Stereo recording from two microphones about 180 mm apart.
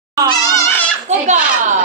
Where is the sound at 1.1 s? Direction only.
40° right (ahead or behind).